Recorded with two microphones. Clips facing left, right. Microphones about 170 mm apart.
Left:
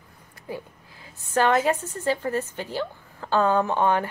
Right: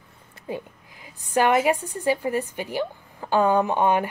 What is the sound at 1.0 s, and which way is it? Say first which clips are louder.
Speech: right 1 dB; 15° right (ahead or behind).